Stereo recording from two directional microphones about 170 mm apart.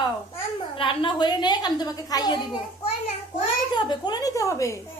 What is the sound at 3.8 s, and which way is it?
Speech, 25° left (ahead or behind).